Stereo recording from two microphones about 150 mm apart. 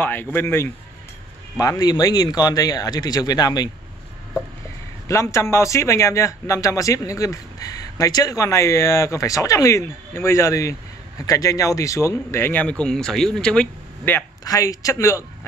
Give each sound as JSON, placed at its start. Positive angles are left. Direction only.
{"t": 0.0, "sound": "a man's voice", "side_deg": 15}
{"t": 14.4, "sound": "a man's voice", "side_deg": 25}